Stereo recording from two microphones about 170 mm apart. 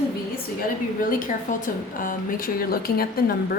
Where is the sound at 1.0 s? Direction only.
50° left (ahead or behind).